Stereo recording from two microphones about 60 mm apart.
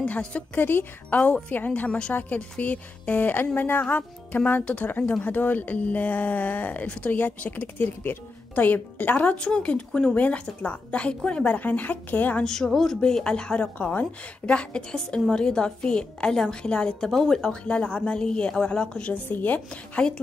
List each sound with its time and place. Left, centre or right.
0.0 s speech: left
0.6 s speech: left
12.4 s a woman's voice: centre
13.7 s a woman's voice: left
19.3 s speech: left
20.0 s a woman's voice: centre